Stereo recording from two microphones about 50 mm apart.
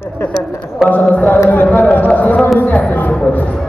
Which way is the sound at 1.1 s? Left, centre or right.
Left.